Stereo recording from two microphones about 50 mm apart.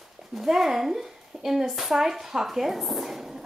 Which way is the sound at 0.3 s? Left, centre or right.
Centre.